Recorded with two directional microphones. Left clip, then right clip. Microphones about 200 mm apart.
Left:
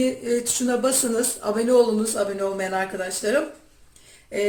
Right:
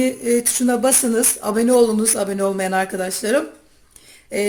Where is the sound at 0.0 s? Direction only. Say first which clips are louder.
Right 4 dB; 40° right (ahead or behind).